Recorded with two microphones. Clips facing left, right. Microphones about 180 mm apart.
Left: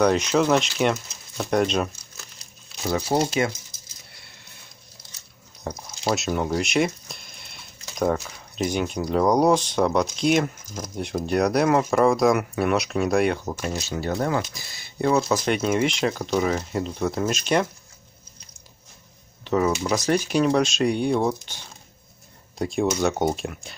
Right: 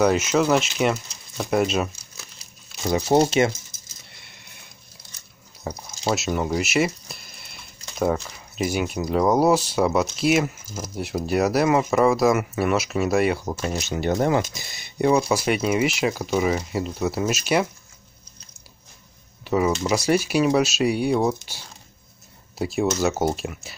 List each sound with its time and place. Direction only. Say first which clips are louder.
0.0 s speech: even; 5° right (ahead or behind)
2.9 s speech: right 4 dB; 20° right (ahead or behind)
5.6 s speech: even; 5° right (ahead or behind)
19.4 s a sound: even; 10° right (ahead or behind)
19.8 s speech: right 2 dB; 10° right (ahead or behind)